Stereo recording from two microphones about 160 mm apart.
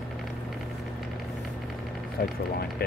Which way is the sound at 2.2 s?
65° left (ahead or behind).